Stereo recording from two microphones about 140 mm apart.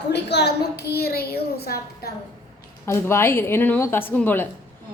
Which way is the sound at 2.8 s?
20° left (ahead or behind).